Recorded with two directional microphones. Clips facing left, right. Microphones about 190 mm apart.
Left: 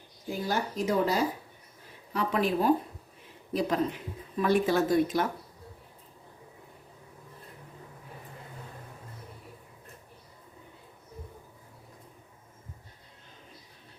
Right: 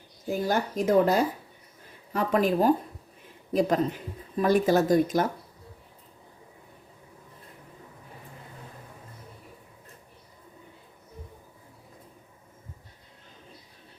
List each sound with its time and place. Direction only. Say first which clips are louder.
0.3 s speech: right 4 dB; 50° right (ahead or behind)